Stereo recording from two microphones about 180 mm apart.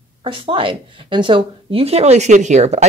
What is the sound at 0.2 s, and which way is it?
A woman's voice, 30° right (ahead or behind).